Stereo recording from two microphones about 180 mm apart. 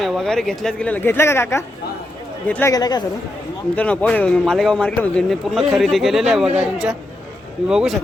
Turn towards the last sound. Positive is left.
turn(degrees=-5)  # may be behind; listen again after turning